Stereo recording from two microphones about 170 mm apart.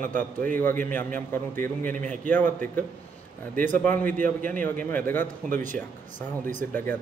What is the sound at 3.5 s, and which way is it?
Speech, 50° right (ahead or behind).